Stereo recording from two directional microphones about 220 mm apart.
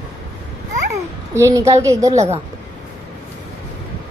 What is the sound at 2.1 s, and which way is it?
Speech, 30° right (ahead or behind).